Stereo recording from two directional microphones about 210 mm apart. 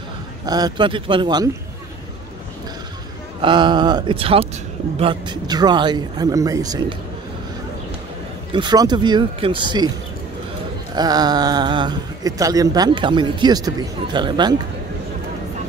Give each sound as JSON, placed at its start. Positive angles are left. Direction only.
{"t": 0.5, "sound": "speech", "side_deg": -20}
{"t": 3.3, "sound": "speech", "side_deg": -20}
{"t": 8.5, "sound": "speech", "side_deg": -20}
{"t": 11.0, "sound": "speech", "side_deg": -20}